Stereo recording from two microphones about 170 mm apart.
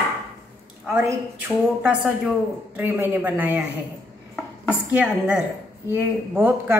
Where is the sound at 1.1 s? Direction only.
10° right (ahead or behind).